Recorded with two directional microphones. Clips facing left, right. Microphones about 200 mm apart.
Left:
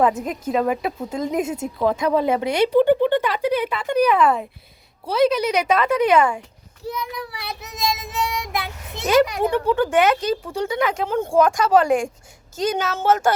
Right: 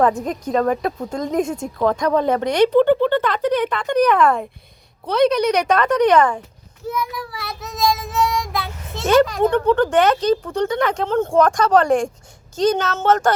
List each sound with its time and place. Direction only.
0.2 s speech: 5° left (ahead or behind)
7.9 s child singing: 20° left (ahead or behind)
9.0 s speech: 10° left (ahead or behind)